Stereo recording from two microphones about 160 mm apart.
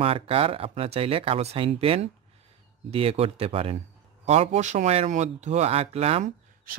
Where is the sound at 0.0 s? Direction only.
35° right (ahead or behind).